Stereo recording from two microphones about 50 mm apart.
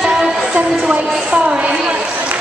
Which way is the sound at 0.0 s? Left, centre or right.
Centre.